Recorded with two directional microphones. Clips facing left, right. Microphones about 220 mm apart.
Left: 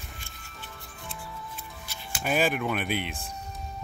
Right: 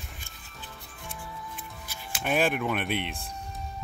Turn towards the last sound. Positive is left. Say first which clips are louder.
# even
turn(degrees=0)  # may be behind; listen again after turning